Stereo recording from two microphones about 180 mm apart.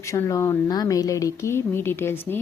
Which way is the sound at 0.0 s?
15° left (ahead or behind).